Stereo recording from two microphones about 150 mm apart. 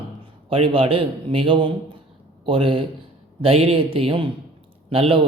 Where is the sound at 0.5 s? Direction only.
35° right (ahead or behind).